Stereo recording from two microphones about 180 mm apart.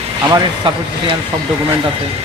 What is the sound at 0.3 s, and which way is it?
Speech, 25° right (ahead or behind).